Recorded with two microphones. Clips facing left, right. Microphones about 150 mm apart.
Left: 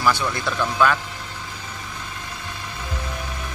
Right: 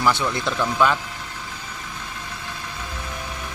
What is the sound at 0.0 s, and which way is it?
Speech, 20° right (ahead or behind).